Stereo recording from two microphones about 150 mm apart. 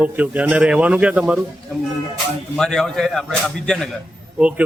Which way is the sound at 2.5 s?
5° left (ahead or behind).